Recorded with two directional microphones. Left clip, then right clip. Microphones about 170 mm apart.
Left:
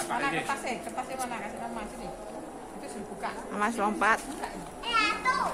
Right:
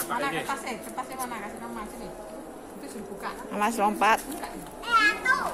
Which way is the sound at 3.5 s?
10° right (ahead or behind).